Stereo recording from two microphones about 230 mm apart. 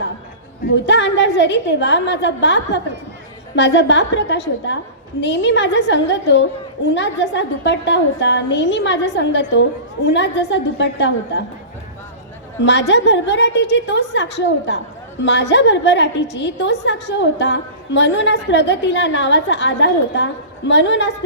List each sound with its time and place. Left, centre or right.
0.9 s a woman's voice: left
12.9 s a woman's voice: left